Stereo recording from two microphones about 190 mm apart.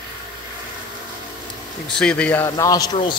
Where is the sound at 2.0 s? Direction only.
5° left (ahead or behind); by 3.2 s 20° left (ahead or behind).